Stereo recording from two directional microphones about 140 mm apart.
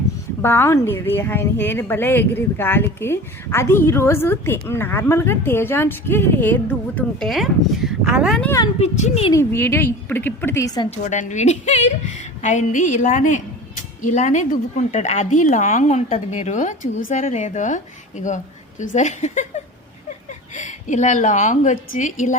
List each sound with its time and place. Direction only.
0.4 s speech: 15° left (ahead or behind)
7.3 s speech: centre (ahead or behind)
8.8 s a child's voice: 50° left (ahead or behind)
9.3 s speech: 15° left (ahead or behind)
10.9 s a woman's voice: 60° left (ahead or behind)